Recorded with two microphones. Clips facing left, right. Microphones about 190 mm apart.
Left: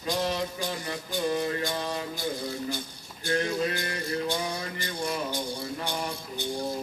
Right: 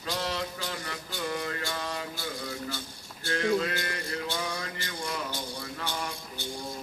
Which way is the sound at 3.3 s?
20° left (ahead or behind).